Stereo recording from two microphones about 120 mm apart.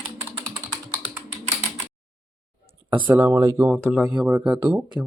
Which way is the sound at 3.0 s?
15° right (ahead or behind).